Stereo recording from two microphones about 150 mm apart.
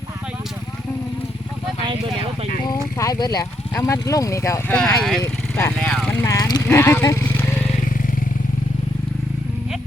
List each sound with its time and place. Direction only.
2.6 s speech: 25° left (ahead or behind)
4.7 s speech: 5° left (ahead or behind)
5.2 s speech: 15° left (ahead or behind)
6.2 s speech: 25° left (ahead or behind)